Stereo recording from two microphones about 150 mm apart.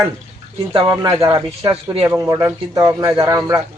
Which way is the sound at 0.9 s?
20° right (ahead or behind).